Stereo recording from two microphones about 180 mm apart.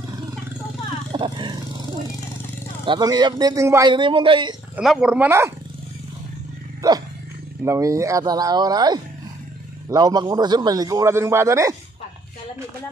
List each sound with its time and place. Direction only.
1.1 s vehicle: 25° right (ahead or behind)
2.8 s a man's voice: 25° right (ahead or behind)
3.9 s a man's voice: 30° right (ahead or behind)
4.7 s speech: 5° right (ahead or behind)
7.6 s a man's voice: 15° right (ahead or behind)